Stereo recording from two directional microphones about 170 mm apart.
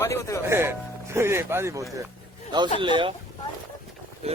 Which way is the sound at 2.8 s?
30° right (ahead or behind).